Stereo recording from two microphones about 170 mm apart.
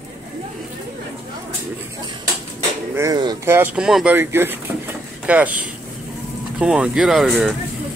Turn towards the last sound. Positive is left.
turn(degrees=0)  # may be behind; listen again after turning